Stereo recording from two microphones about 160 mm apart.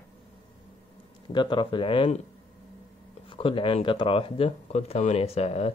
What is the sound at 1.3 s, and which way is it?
Speech, 30° left (ahead or behind).